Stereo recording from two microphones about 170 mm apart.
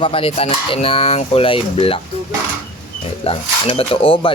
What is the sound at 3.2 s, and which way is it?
Speech, 35° left (ahead or behind).